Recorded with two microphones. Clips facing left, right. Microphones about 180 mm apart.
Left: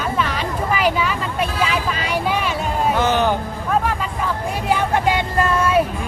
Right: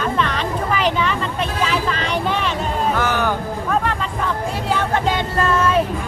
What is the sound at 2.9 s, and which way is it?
Music, 20° left (ahead or behind).